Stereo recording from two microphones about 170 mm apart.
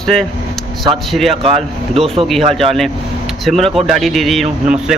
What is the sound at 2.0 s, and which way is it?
Speech, 35° right (ahead or behind).